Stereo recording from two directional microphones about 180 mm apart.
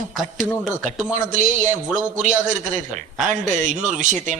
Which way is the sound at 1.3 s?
45° right (ahead or behind).